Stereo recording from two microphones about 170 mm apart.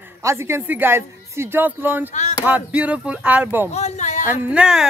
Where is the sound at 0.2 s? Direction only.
15° right (ahead or behind).